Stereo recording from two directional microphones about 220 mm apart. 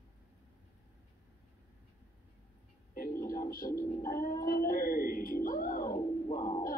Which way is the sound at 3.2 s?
40° left (ahead or behind).